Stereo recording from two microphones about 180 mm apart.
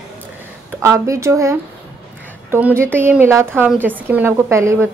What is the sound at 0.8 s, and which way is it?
A woman's voice, 15° right (ahead or behind).